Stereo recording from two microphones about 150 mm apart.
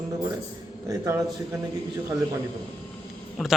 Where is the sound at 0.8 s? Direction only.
25° right (ahead or behind).